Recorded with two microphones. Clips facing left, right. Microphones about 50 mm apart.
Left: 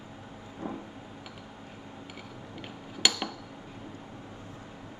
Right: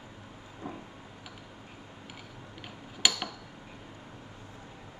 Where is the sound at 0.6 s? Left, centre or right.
Left.